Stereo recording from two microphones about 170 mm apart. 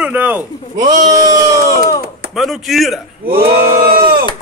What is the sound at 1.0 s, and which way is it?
Speech, 20° right (ahead or behind).